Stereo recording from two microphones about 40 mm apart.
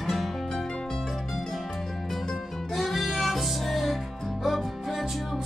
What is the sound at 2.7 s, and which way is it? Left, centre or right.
Music, centre.